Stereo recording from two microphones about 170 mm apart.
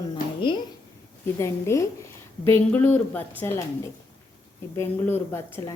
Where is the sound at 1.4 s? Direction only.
15° left (ahead or behind).